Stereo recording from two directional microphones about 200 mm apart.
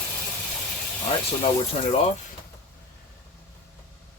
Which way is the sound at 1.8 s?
30° left (ahead or behind).